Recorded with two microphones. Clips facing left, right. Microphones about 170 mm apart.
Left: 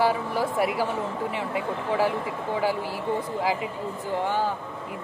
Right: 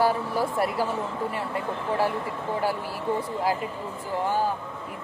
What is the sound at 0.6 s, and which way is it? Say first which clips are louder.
Speech: left 1 dB; 15° left (ahead or behind).